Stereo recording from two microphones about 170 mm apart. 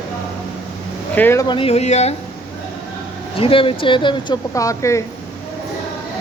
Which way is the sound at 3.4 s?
30° left (ahead or behind).